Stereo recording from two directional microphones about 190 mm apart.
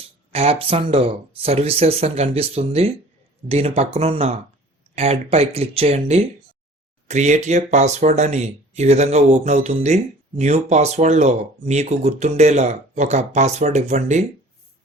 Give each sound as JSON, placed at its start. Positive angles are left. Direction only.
{"t": 0.3, "sound": "speech", "side_deg": -30}